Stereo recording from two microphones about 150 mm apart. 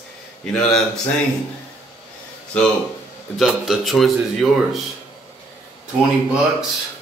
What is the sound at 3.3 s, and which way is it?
Speech, centre (ahead or behind).